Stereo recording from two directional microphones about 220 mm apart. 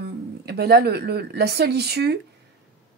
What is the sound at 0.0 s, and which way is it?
Speech, 45° right (ahead or behind).